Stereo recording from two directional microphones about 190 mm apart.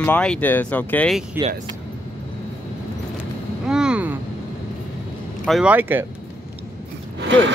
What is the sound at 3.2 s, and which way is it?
Vehicle, 5° right (ahead or behind).